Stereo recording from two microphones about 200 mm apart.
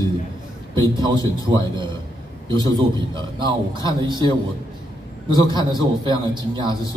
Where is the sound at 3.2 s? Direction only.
20° right (ahead or behind).